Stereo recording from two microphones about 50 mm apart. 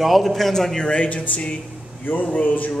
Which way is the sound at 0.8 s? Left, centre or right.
Left.